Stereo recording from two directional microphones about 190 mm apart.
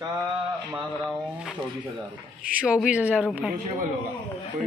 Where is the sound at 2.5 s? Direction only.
5° right (ahead or behind).